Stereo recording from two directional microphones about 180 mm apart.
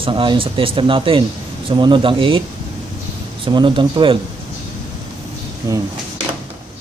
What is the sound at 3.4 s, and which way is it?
Speech, 25° right (ahead or behind).